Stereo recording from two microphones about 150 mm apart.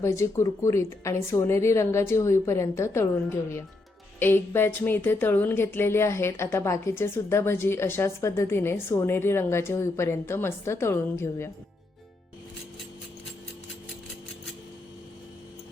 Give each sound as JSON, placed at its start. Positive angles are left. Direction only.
{"t": 0.0, "sound": "a woman's voice", "side_deg": 20}